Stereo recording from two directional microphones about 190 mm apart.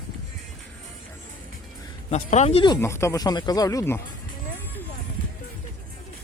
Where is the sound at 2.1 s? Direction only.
40° left (ahead or behind).